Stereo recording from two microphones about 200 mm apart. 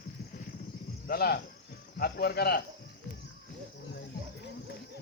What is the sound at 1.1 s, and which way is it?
Speech, 50° left (ahead or behind).